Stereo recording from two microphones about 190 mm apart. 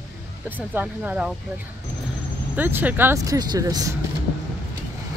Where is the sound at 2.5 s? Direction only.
10° right (ahead or behind).